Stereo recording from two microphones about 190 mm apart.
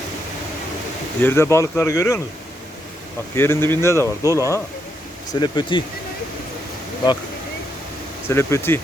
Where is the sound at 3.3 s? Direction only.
10° left (ahead or behind).